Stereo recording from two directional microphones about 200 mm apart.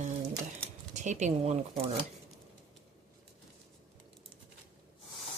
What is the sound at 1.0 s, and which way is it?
Speech, 35° right (ahead or behind).